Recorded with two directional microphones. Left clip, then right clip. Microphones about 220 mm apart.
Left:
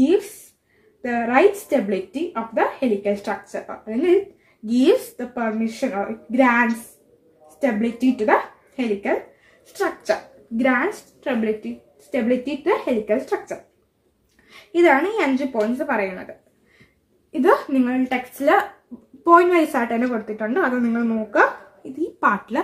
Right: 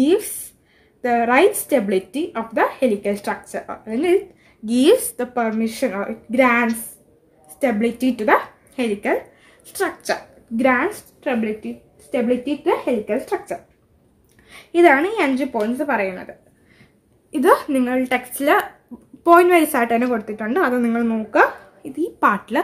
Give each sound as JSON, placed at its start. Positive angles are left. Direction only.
{"t": 1.0, "sound": "a woman's voice", "side_deg": -50}
{"t": 12.6, "sound": "a woman's voice", "side_deg": -35}
{"t": 17.3, "sound": "a woman's voice", "side_deg": -50}